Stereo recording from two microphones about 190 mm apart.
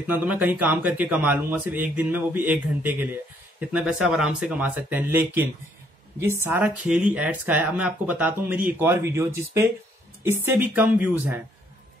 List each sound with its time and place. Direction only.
0.0 s speech: 10° right (ahead or behind)